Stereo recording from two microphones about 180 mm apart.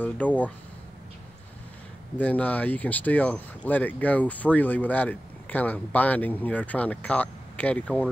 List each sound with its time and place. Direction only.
0.0 s speech: 10° left (ahead or behind)
2.1 s speech: 10° left (ahead or behind)